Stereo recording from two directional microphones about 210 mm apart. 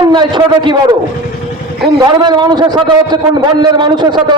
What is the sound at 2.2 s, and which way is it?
A man's voice, 20° right (ahead or behind).